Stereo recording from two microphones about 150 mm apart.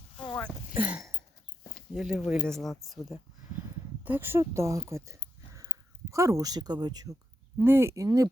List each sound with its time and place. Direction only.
0.8 s a sound: 10° right (ahead or behind)
1.9 s speech: 5° right (ahead or behind)
4.0 s speech: 15° right (ahead or behind)